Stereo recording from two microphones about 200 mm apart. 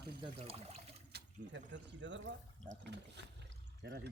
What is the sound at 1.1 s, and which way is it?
Speech, 65° right (ahead or behind).